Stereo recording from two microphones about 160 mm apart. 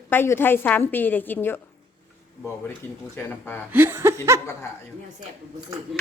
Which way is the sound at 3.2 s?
15° left (ahead or behind).